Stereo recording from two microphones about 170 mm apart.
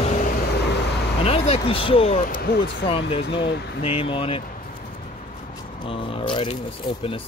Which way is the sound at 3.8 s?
35° left (ahead or behind).